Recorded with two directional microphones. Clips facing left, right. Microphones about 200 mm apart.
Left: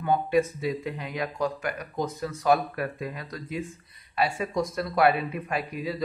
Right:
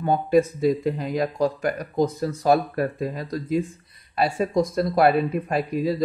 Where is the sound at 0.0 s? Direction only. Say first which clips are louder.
Right 4 dB; 40° right (ahead or behind).